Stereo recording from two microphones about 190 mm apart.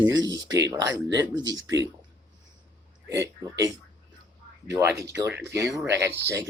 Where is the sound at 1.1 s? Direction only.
75° right (ahead or behind).